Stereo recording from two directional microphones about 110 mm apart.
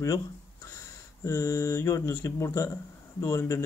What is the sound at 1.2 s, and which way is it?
Speech, 25° left (ahead or behind).